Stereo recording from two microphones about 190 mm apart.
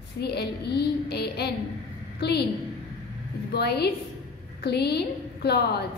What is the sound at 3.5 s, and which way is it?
A woman's voice, 60° left (ahead or behind).